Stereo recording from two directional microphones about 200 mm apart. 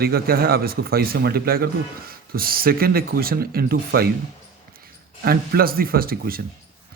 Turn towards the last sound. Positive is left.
turn(degrees=-45)  # may be behind; listen again after turning